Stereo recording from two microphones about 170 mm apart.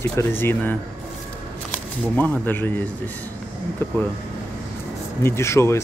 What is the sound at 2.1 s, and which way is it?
Speech, 10° left (ahead or behind).